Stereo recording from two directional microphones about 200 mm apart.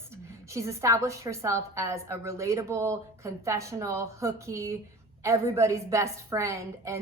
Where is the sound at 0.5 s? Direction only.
15° right (ahead or behind).